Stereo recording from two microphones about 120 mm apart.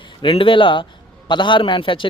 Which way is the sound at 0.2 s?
45° left (ahead or behind).